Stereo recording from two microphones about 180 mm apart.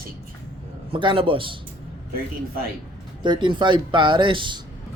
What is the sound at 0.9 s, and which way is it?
Speech, 30° right (ahead or behind).